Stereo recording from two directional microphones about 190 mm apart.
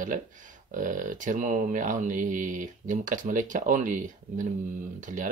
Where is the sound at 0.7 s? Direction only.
45° right (ahead or behind).